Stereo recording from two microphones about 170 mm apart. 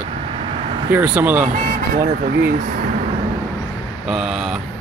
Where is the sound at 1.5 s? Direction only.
50° right (ahead or behind).